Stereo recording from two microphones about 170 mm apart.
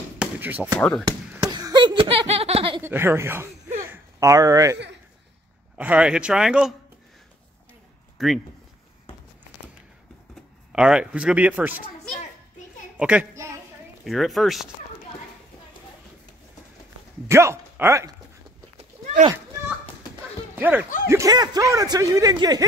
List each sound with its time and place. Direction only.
0.2 s a sound: 10° right (ahead or behind)
0.7 s speech: 10° left (ahead or behind)
1.4 s a sound: 20° right (ahead or behind)
2.8 s speech: 15° right (ahead or behind)
5.8 s speech: 5° right (ahead or behind)
8.2 s speech: centre (ahead or behind)
10.7 s speech: 5° right (ahead or behind)
12.9 s a child's voice: 10° right (ahead or behind)
14.0 s speech: centre (ahead or behind)
17.3 s speech: 15° right (ahead or behind)
20.5 s speech: 10° right (ahead or behind)
21.1 s speech: 20° right (ahead or behind)